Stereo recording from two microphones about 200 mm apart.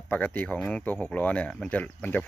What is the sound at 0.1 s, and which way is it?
Speech, 10° left (ahead or behind).